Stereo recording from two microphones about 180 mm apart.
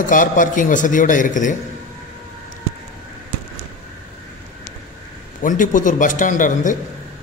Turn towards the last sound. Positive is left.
turn(degrees=45)  # may be behind; listen again after turning